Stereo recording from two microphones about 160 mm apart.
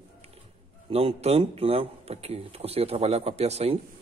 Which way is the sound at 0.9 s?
40° right (ahead or behind).